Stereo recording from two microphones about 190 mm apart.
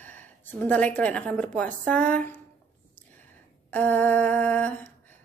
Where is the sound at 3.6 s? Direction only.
10° left (ahead or behind).